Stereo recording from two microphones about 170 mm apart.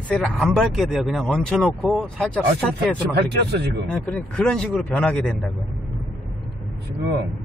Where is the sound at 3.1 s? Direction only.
70° right (ahead or behind).